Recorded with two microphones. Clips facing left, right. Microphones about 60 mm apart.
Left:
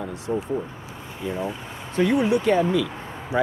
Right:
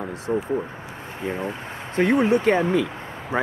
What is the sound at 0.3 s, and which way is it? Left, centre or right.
Speech, right.